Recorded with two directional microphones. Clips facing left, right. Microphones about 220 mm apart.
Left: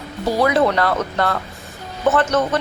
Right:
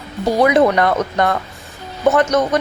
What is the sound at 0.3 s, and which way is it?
A woman's voice, 15° right (ahead or behind).